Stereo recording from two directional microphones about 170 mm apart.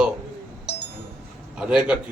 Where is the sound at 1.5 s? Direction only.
5° right (ahead or behind).